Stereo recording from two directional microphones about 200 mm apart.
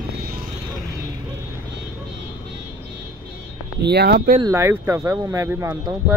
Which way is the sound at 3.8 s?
55° right (ahead or behind).